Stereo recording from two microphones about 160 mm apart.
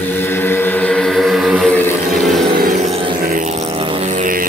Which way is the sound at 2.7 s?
40° right (ahead or behind).